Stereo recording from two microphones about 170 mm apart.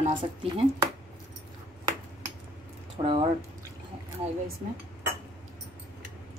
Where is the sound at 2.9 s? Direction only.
30° right (ahead or behind).